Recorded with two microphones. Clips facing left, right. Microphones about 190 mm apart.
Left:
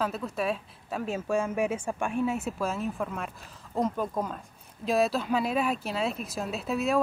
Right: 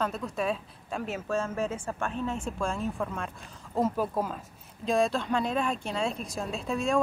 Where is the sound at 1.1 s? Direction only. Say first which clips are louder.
Left 3 dB; 15° left (ahead or behind).